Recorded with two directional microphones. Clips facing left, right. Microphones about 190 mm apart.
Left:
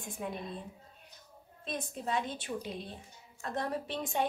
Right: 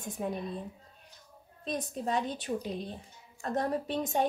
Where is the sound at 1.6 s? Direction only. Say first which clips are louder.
Right 4 dB; 40° right (ahead or behind).